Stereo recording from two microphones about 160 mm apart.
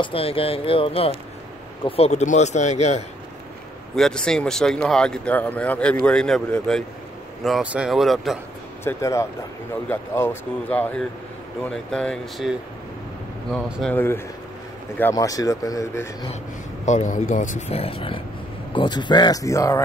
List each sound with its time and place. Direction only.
0.0 s speech: 35° left (ahead or behind)
3.9 s speech: 5° left (ahead or behind)
8.8 s speech: 20° left (ahead or behind); by 13.9 s centre (ahead or behind)
13.9 s speech: 15° left (ahead or behind)
16.8 s speech: 50° left (ahead or behind); by 19.8 s 20° left (ahead or behind)